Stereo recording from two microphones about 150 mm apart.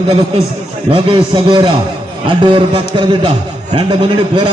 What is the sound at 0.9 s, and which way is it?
A man's voice, 35° right (ahead or behind).